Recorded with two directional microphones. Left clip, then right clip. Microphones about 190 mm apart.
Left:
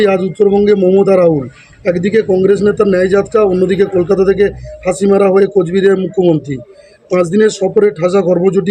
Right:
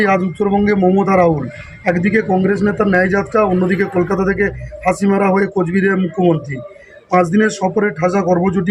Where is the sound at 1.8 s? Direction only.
45° left (ahead or behind).